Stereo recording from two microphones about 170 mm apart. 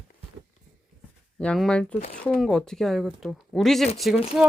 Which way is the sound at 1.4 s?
5° left (ahead or behind).